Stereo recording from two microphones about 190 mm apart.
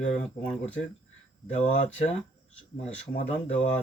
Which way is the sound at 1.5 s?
40° left (ahead or behind).